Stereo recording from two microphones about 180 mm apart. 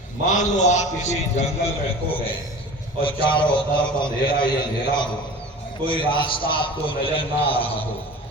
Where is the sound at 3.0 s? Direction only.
30° left (ahead or behind).